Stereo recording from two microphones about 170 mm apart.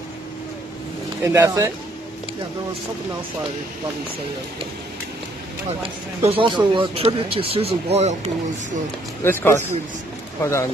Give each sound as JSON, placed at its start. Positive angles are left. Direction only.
{"t": 1.2, "sound": "speech", "side_deg": -20}
{"t": 5.7, "sound": "speech", "side_deg": -35}
{"t": 9.2, "sound": "speech", "side_deg": 15}